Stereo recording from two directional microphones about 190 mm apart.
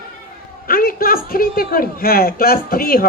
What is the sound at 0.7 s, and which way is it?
Speech, 50° left (ahead or behind).